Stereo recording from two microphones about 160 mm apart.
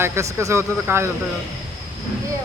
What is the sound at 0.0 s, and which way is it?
Speech, 15° right (ahead or behind).